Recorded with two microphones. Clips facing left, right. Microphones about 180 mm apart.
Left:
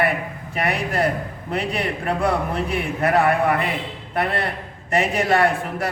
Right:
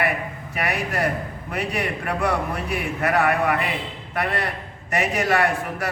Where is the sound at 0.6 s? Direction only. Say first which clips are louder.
Left 3 dB; 30° left (ahead or behind).